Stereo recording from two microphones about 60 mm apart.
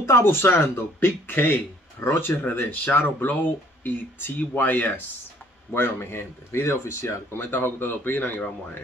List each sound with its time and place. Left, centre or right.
0.0 s speech: left
7.5 s speech: left